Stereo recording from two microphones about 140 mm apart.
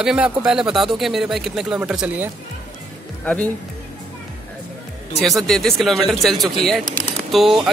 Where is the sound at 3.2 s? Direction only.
10° left (ahead or behind).